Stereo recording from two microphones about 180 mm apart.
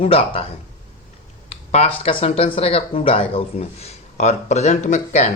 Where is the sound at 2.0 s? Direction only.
35° left (ahead or behind).